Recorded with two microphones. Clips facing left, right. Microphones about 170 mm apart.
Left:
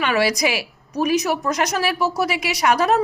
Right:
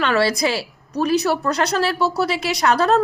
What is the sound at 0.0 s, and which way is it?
A woman's voice, 10° left (ahead or behind).